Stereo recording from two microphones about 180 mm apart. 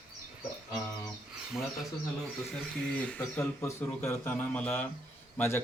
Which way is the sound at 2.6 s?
5° left (ahead or behind).